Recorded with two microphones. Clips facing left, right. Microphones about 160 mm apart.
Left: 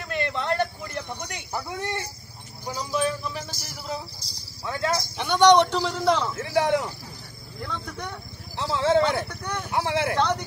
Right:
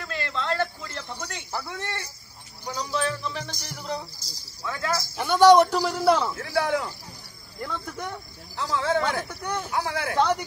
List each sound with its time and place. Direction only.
0.0 s a sound: 20° left (ahead or behind)
2.6 s a man's voice: 10° left (ahead or behind)
4.6 s speech: 25° left (ahead or behind)
5.1 s a man's voice: 5° right (ahead or behind)
6.3 s speech: 20° left (ahead or behind)
7.6 s speech: 5° right (ahead or behind)
8.5 s speech: 25° left (ahead or behind)
9.3 s a man's voice: 10° right (ahead or behind)
9.7 s speech: 25° left (ahead or behind)
10.1 s a man's voice: 10° right (ahead or behind)